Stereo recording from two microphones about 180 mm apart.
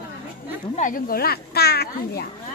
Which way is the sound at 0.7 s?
50° left (ahead or behind).